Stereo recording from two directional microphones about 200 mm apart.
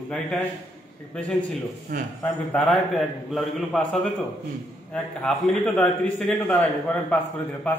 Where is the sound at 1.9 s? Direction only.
45° right (ahead or behind).